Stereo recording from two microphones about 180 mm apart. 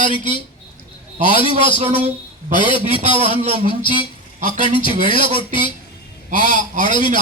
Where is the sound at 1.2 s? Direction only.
30° left (ahead or behind).